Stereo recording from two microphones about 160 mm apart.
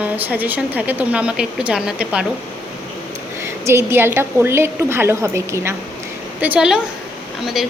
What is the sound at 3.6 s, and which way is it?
A woman's voice, 15° right (ahead or behind).